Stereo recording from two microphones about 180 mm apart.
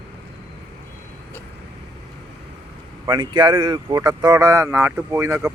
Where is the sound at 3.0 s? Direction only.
25° right (ahead or behind).